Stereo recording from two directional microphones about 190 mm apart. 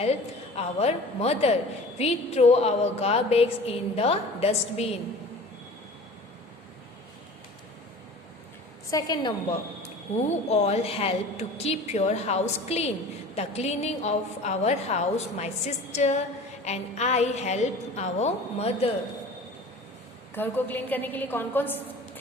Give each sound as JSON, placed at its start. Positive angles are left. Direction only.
{"t": 0.0, "sound": "a woman's voice", "side_deg": 35}
{"t": 8.9, "sound": "a woman's voice", "side_deg": 20}
{"t": 10.2, "sound": "a woman's voice", "side_deg": 35}
{"t": 20.3, "sound": "a woman's voice", "side_deg": 10}